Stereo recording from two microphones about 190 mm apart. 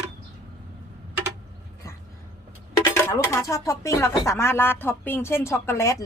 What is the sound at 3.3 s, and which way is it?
Speech, 15° left (ahead or behind).